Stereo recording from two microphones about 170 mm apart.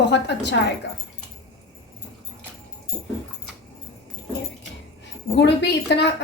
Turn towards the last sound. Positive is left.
turn(degrees=90)